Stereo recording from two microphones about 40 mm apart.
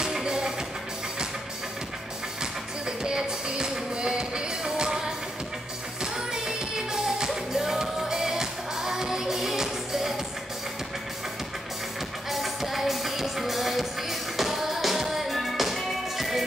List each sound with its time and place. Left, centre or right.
0.0 s music: centre
3.0 s music: centre
6.1 s music: centre
12.3 s music: centre